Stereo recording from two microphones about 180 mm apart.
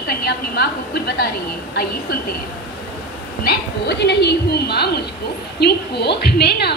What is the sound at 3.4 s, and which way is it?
A woman's voice, 65° left (ahead or behind).